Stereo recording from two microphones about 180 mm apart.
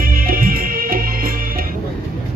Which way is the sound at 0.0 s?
55° right (ahead or behind).